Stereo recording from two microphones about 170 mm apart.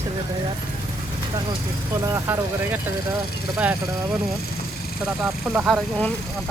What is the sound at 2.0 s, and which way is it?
Speech, 15° right (ahead or behind).